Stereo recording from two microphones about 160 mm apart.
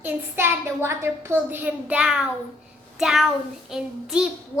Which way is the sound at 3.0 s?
Centre (ahead or behind).